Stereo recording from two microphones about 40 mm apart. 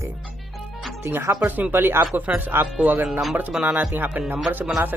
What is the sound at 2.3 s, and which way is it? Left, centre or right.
Speech, right.